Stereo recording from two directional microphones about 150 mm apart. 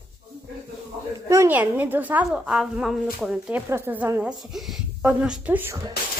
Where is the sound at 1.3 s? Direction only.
15° right (ahead or behind).